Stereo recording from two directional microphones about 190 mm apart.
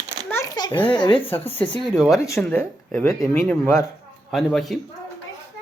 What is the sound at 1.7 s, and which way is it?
Speech, 5° left (ahead or behind).